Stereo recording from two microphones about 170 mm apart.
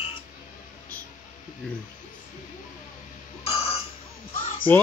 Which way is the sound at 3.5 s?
35° left (ahead or behind).